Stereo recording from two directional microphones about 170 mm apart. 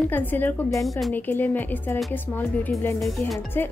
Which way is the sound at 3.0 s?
Centre (ahead or behind).